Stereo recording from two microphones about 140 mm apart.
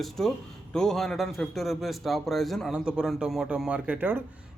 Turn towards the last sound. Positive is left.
turn(degrees=-15)  # may be behind; listen again after turning